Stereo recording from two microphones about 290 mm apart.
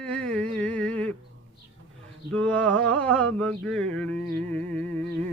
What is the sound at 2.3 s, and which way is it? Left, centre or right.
Mantra, centre.